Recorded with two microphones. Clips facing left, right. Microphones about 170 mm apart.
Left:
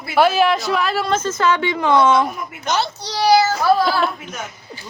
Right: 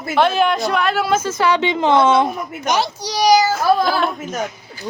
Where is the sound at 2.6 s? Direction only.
15° right (ahead or behind).